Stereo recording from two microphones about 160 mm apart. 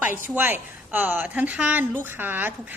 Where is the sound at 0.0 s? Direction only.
10° right (ahead or behind).